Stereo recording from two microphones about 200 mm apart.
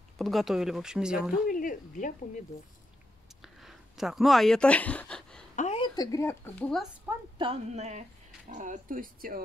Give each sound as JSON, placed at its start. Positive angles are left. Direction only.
{"t": 0.2, "sound": "speech", "side_deg": 0}
{"t": 1.5, "sound": "speech", "side_deg": 40}
{"t": 3.4, "sound": "a sound", "side_deg": 0}
{"t": 5.6, "sound": "a sound", "side_deg": 30}
{"t": 5.9, "sound": "speech", "side_deg": 15}
{"t": 7.3, "sound": "a woman's voice", "side_deg": -30}